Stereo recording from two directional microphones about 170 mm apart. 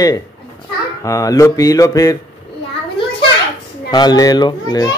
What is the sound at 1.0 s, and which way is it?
A child's voice, 20° left (ahead or behind).